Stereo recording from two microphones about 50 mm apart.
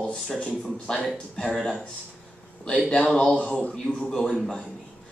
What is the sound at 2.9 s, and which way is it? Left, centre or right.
Speech, centre.